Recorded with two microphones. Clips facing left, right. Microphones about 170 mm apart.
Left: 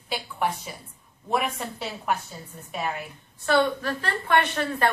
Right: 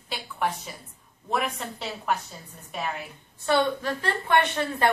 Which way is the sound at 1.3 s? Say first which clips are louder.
Left 2 dB; centre (ahead or behind).